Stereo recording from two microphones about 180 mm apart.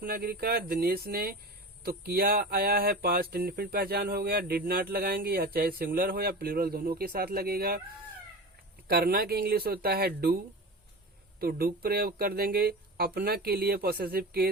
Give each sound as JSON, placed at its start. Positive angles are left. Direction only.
{"t": 0.0, "sound": "speech", "side_deg": -55}
{"t": 8.9, "sound": "speech", "side_deg": -60}